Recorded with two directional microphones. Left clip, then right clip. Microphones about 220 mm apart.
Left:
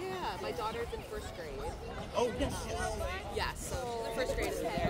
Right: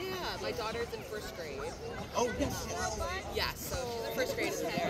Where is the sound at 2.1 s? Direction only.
20° left (ahead or behind).